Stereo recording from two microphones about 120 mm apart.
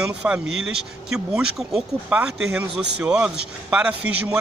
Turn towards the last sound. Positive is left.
turn(degrees=-10)  # may be behind; listen again after turning